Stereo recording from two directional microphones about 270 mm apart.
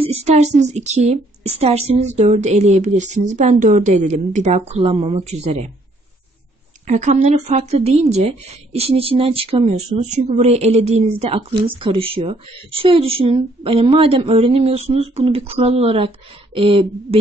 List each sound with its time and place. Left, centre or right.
0.0 s a woman's voice: right
6.9 s a woman's voice: right